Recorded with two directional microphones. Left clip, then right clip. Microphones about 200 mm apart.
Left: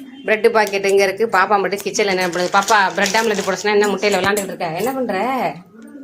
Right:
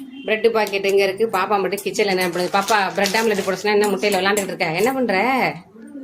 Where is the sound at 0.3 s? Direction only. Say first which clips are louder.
Left 3 dB; centre (ahead or behind).